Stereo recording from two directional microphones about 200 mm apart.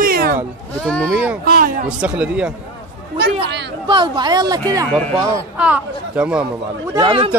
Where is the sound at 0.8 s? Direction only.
5° left (ahead or behind).